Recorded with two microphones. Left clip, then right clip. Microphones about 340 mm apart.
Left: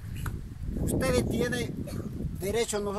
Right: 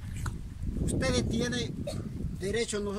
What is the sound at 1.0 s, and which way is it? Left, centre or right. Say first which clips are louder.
A man's voice: left 3 dB; centre.